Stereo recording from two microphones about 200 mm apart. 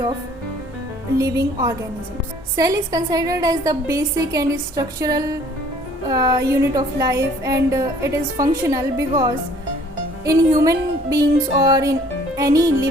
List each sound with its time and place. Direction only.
1.2 s a woman's voice: 15° right (ahead or behind)
10.6 s a woman's voice: 15° right (ahead or behind)